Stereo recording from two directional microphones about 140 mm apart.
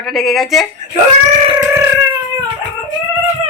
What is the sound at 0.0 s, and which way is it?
Speech, centre (ahead or behind).